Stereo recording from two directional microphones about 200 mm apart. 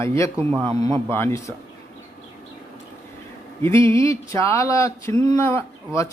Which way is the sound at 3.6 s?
15° left (ahead or behind).